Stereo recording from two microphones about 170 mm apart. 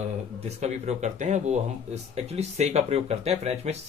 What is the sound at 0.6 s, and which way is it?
Speech, 40° right (ahead or behind).